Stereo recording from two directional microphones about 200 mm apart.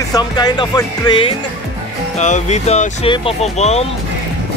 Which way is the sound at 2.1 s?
35° left (ahead or behind).